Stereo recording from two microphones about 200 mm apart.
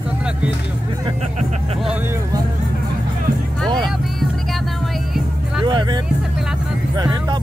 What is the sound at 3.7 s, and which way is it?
Vehicle, 20° right (ahead or behind).